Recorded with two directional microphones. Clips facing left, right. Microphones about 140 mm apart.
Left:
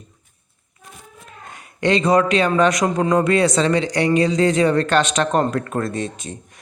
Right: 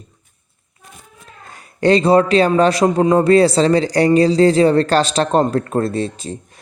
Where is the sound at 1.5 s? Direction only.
35° right (ahead or behind).